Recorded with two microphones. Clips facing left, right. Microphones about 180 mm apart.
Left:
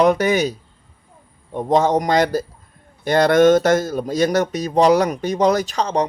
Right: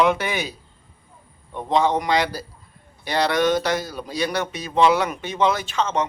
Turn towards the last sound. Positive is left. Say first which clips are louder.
# left 4 dB
turn(degrees=35)  # may be behind; listen again after turning